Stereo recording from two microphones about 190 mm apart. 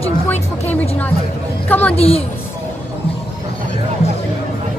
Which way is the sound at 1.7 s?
10° left (ahead or behind).